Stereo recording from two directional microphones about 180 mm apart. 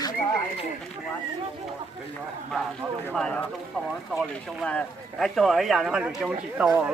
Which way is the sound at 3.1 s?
5° left (ahead or behind).